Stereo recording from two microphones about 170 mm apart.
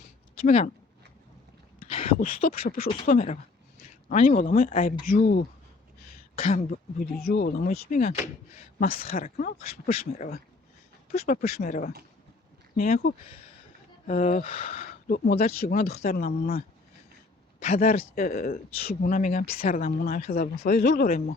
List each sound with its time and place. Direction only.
0.4 s speech: 45° left (ahead or behind)
1.9 s a sound: 35° left (ahead or behind)
2.6 s speech: 60° left (ahead or behind)
3.1 s speech: 45° left (ahead or behind)
6.3 s speech: 35° left (ahead or behind)
6.7 s speech: 60° left (ahead or behind); by 8.6 s 45° left (ahead or behind)
9.1 s speech: 55° left (ahead or behind)
14.1 s speech: 50° left (ahead or behind)
17.7 s speech: 55° left (ahead or behind)